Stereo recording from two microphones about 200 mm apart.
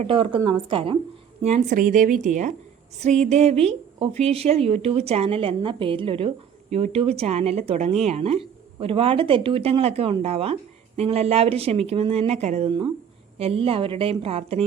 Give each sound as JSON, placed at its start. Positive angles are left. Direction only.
{"t": 0.0, "sound": "a woman's voice", "side_deg": -25}